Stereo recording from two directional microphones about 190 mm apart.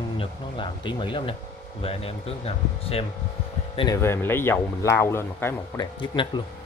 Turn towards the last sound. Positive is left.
turn(degrees=25)  # may be behind; listen again after turning